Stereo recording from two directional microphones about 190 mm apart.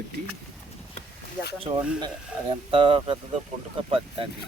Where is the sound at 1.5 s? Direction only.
30° right (ahead or behind).